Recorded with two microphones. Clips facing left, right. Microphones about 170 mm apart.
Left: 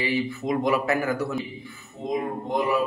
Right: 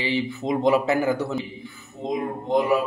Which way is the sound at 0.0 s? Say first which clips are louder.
Right 1 dB; 25° right (ahead or behind).